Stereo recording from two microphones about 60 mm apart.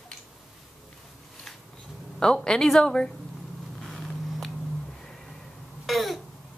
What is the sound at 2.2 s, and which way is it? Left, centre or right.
Speech, centre.